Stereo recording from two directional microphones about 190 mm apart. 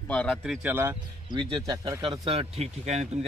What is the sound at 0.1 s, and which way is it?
Speech, 5° left (ahead or behind).